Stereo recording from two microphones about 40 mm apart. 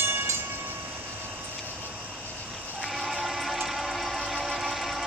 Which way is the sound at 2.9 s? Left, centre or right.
Centre.